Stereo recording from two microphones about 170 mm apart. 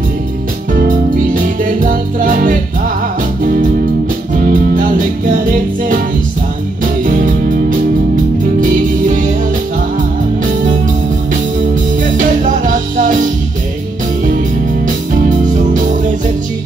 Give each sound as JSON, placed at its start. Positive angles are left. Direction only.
{"t": 0.7, "sound": "music", "side_deg": -50}
{"t": 12.0, "sound": "music", "side_deg": -50}
{"t": 15.2, "sound": "music", "side_deg": -50}